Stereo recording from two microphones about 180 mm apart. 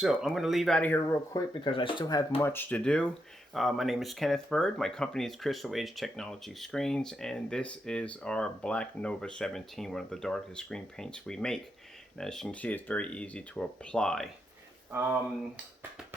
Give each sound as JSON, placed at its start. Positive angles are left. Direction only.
{"t": 0.0, "sound": "speech", "side_deg": 0}
{"t": 1.3, "sound": "speech", "side_deg": 25}